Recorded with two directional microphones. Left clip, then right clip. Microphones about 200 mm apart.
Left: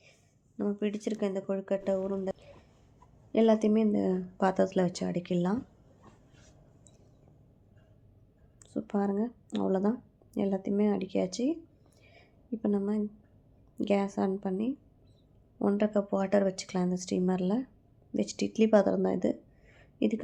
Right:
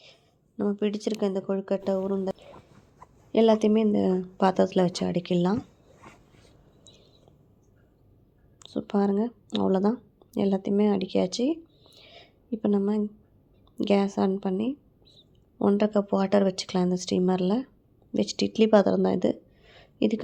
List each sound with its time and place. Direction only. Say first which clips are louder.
0.0 s speech: right 7 dB; 25° right (ahead or behind)
8.5 s speech: right 5 dB; 25° right (ahead or behind)